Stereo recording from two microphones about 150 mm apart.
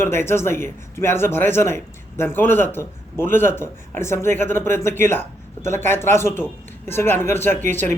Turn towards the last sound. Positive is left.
turn(degrees=15)  # may be behind; listen again after turning